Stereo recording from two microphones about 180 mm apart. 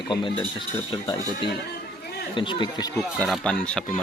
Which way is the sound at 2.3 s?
25° left (ahead or behind).